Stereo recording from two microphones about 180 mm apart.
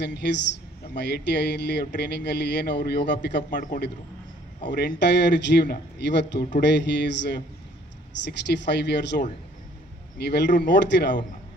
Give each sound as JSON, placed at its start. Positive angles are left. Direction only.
{"t": 0.0, "sound": "a man's voice", "side_deg": 70}
{"t": 3.5, "sound": "a man's voice", "side_deg": 45}
{"t": 4.6, "sound": "a man's voice", "side_deg": 70}
{"t": 5.6, "sound": "a man's voice", "side_deg": 60}